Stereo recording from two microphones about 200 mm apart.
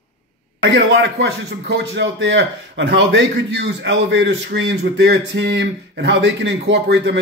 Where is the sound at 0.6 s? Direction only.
60° right (ahead or behind).